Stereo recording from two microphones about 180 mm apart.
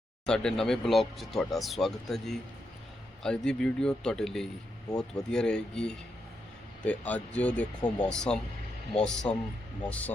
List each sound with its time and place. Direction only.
0.3 s speech: 5° left (ahead or behind)
4.9 s speech: 20° left (ahead or behind)
5.3 s speech: 5° left (ahead or behind)